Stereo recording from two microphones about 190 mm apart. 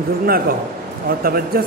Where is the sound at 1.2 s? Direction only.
50° right (ahead or behind).